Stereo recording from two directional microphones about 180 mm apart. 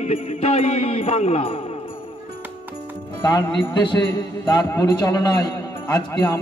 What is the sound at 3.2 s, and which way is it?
Speech, 25° left (ahead or behind).